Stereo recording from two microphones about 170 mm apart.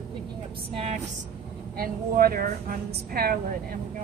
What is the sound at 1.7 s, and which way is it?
A woman's voice, 60° right (ahead or behind).